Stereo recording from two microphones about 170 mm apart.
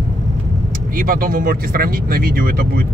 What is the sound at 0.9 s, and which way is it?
Speech, 60° right (ahead or behind).